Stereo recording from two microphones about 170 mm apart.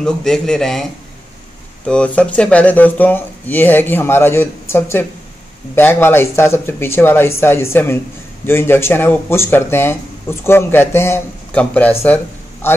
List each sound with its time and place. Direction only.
0.0 s speech: 5° left (ahead or behind)
1.9 s speech: 5° left (ahead or behind)